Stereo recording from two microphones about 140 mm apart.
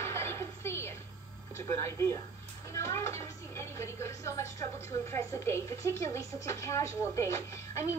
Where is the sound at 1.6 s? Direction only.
20° left (ahead or behind).